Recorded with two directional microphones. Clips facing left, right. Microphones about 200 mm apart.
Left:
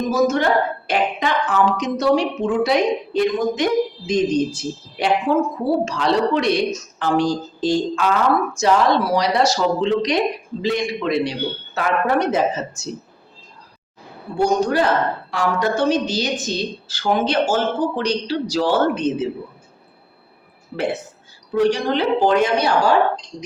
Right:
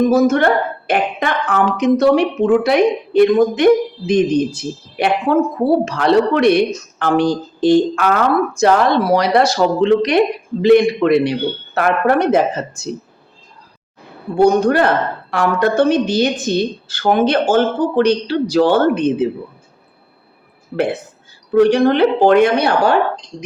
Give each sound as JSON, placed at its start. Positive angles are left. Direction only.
{"t": 0.1, "sound": "speech", "side_deg": -55}
{"t": 14.3, "sound": "speech", "side_deg": -60}
{"t": 21.5, "sound": "speech", "side_deg": -60}